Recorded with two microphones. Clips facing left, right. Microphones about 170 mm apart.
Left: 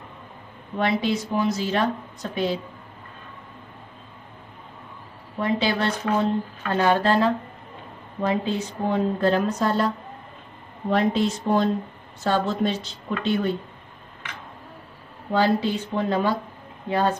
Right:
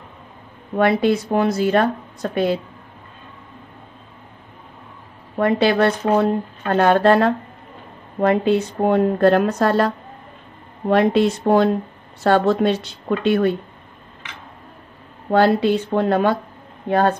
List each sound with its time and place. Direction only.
0.7 s a woman's voice: 55° right (ahead or behind)
5.4 s a woman's voice: 60° right (ahead or behind)
15.3 s a woman's voice: 65° right (ahead or behind)